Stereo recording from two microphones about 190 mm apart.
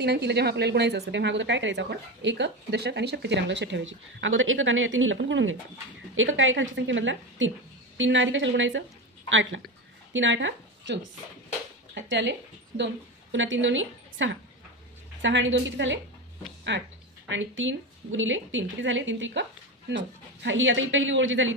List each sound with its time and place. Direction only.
0.0 s a woman's voice: 60° right (ahead or behind); by 5.6 s 80° right
6.1 s a woman's voice: 90° right
9.3 s a woman's voice: 90° right
10.1 s a woman's voice: 80° right
17.3 s a woman's voice: 85° right